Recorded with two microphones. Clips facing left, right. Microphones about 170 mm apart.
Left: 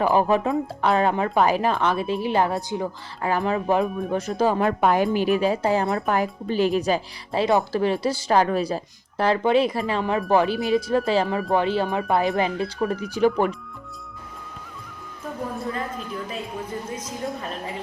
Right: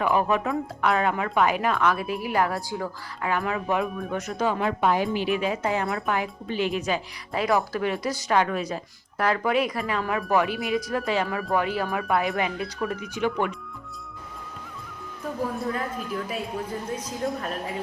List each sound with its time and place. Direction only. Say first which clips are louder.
0.0 s speech: left 4 dB; 30° left (ahead or behind)
3.2 s speech: left 4 dB; 35° left (ahead or behind)
4.6 s speech: left 3 dB; 50° left (ahead or behind)
15.5 s a woman's voice: even; centre (ahead or behind)